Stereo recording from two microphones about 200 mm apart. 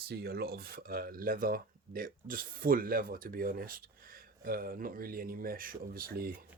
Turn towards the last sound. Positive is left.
turn(degrees=-45)  # may be behind; listen again after turning